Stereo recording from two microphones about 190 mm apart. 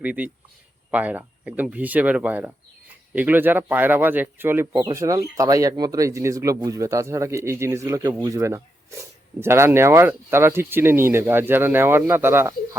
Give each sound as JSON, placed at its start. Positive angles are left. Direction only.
{"t": 0.0, "sound": "speech", "side_deg": -5}